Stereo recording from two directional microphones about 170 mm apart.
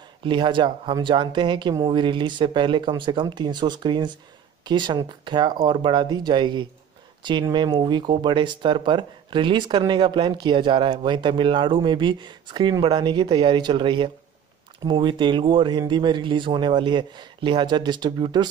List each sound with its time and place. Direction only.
0.2 s speech: 30° right (ahead or behind)